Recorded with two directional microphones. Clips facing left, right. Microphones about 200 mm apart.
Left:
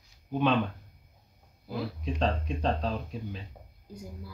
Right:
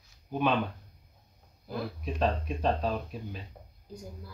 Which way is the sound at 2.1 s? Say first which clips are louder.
Right 1 dB; 5° right (ahead or behind).